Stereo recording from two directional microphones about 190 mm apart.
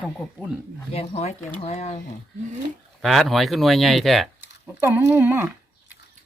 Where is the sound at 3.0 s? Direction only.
Centre (ahead or behind).